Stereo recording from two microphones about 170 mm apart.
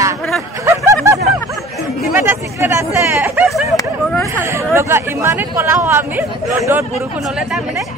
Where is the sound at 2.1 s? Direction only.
15° right (ahead or behind).